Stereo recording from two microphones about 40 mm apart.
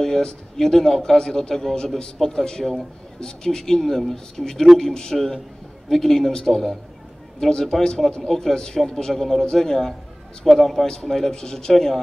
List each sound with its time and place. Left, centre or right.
0.0 s a man's voice: centre
11.3 s a man's voice: centre
11.7 s a man's voice: centre